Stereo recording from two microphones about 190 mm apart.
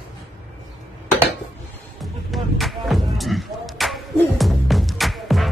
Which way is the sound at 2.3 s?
Centre (ahead or behind).